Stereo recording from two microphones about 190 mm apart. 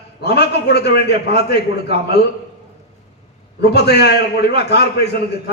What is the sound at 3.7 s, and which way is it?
A man's voice, 60° left (ahead or behind).